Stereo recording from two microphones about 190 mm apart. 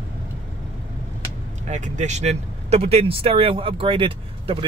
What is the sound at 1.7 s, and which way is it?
Speech, 40° right (ahead or behind).